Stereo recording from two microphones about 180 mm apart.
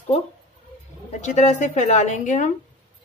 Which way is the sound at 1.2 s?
40° left (ahead or behind).